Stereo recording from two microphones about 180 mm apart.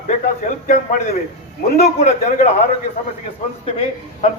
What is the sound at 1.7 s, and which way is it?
Speech, 35° left (ahead or behind).